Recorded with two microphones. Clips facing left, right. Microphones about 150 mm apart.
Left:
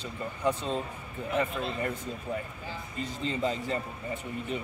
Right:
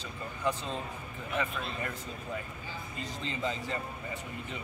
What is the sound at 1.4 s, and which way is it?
Speech, 30° left (ahead or behind).